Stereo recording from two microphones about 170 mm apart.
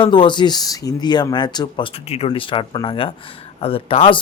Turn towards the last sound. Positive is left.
turn(degrees=30)  # may be behind; listen again after turning